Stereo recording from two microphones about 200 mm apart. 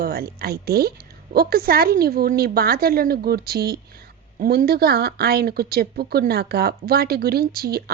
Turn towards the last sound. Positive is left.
turn(degrees=-50)  # may be behind; listen again after turning